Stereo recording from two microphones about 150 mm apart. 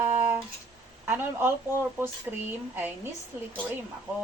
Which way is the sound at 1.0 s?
15° right (ahead or behind).